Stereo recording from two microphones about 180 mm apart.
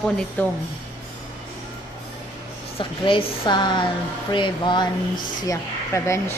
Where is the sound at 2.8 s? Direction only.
30° left (ahead or behind).